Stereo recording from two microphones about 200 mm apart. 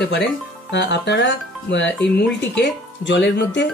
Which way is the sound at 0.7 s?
60° left (ahead or behind).